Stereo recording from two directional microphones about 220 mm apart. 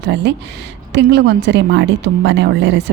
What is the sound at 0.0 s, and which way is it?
A woman's voice, 50° right (ahead or behind).